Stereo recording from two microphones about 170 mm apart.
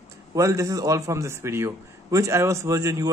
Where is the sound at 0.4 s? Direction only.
20° right (ahead or behind).